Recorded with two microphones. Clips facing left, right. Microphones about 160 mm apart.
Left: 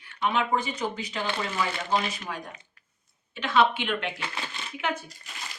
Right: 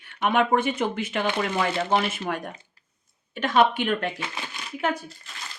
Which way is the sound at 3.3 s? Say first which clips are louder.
Right 3 dB; 45° right (ahead or behind).